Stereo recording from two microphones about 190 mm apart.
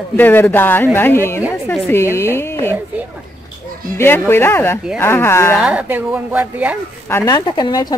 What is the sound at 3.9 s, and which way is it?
A woman's voice, 10° left (ahead or behind).